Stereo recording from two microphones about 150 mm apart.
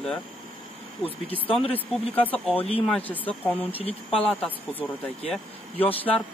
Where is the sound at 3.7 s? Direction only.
40° left (ahead or behind).